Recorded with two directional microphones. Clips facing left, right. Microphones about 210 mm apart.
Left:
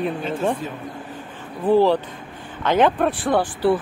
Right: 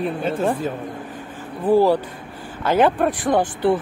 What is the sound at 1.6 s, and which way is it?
Speech, 10° right (ahead or behind).